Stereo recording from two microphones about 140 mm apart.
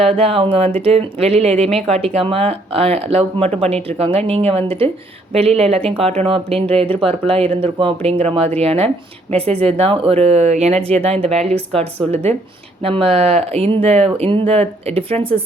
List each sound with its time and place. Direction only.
0.0 s speech: 45° right (ahead or behind)
12.0 s speech: 5° left (ahead or behind)
12.8 s speech: 45° right (ahead or behind)